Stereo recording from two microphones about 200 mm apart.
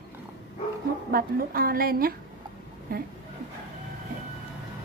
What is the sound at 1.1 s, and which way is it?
Speech, 45° right (ahead or behind).